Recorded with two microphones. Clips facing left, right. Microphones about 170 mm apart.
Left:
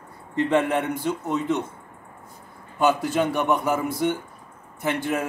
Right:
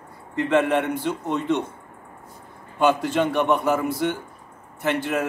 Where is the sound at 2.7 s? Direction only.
10° left (ahead or behind).